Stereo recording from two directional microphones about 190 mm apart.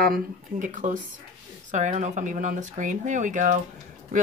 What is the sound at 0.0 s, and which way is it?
A woman's voice, 45° right (ahead or behind).